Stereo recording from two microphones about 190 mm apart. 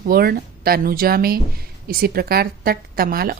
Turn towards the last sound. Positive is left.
turn(degrees=-50)  # may be behind; listen again after turning